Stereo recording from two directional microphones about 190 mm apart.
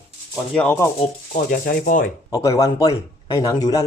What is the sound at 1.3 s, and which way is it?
Speech, 50° left (ahead or behind).